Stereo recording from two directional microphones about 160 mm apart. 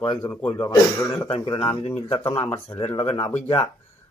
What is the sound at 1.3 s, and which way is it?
Speech, 35° left (ahead or behind).